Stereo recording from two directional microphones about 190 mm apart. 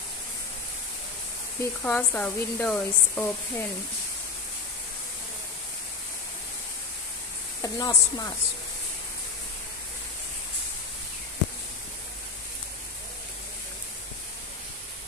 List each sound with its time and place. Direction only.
1.6 s a woman's voice: 10° left (ahead or behind)
7.6 s speech: 20° left (ahead or behind)